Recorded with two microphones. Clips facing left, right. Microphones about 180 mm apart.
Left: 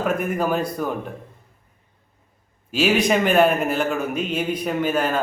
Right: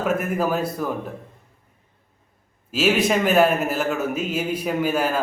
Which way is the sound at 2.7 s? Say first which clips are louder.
Left 1 dB; centre (ahead or behind).